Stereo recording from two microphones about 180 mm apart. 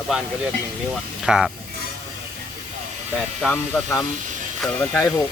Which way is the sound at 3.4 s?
10° left (ahead or behind).